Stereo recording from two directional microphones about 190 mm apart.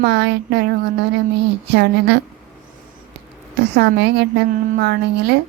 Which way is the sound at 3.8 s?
60° right (ahead or behind).